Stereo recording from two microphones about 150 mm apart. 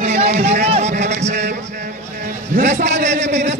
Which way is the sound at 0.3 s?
80° right.